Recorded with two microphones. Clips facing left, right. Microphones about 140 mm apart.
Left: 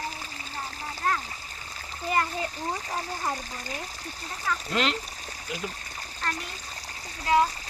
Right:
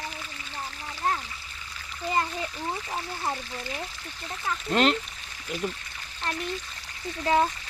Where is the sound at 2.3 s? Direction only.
40° left (ahead or behind).